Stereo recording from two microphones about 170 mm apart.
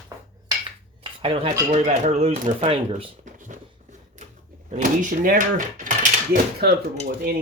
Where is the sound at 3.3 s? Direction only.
50° right (ahead or behind).